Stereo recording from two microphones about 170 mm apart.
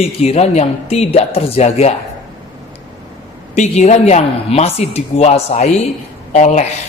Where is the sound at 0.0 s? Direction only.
35° left (ahead or behind).